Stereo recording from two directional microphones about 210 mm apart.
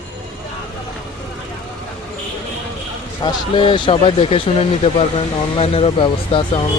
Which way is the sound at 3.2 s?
25° left (ahead or behind).